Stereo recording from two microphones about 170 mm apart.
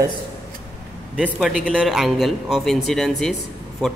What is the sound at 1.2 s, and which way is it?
A man's voice, 5° right (ahead or behind).